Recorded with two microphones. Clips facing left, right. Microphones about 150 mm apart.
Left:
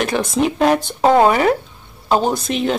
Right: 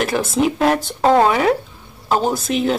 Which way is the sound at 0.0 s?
5° right (ahead or behind).